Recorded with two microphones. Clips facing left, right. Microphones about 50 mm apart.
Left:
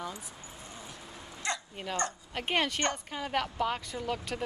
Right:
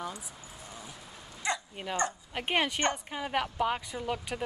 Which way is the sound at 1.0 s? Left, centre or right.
Centre.